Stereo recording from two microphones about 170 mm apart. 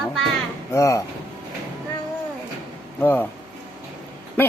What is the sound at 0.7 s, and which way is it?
Speech, 15° left (ahead or behind).